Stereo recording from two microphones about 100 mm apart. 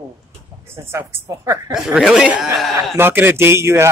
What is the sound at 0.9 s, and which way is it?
Speech, 25° right (ahead or behind).